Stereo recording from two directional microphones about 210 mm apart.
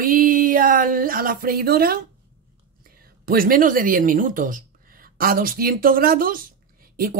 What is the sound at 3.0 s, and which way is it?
Speech, 45° right (ahead or behind).